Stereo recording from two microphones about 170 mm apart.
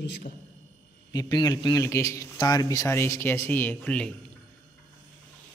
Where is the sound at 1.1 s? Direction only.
25° left (ahead or behind); by 4.1 s 5° left (ahead or behind).